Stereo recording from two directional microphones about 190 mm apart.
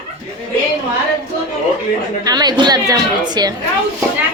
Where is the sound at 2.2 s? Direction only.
20° right (ahead or behind).